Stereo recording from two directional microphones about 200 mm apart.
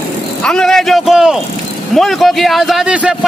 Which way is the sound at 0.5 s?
5° left (ahead or behind).